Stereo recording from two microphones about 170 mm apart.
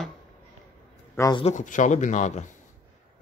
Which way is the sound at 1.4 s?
45° left (ahead or behind).